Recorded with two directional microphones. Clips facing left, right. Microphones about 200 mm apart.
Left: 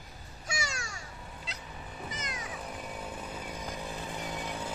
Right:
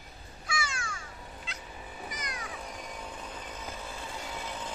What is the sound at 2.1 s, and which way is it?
Music, 25° left (ahead or behind).